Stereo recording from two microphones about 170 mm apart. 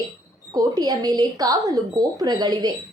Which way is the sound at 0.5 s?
20° right (ahead or behind).